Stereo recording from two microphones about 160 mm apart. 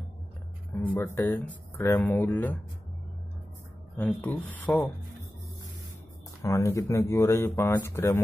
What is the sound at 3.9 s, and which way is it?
Speech, 10° left (ahead or behind).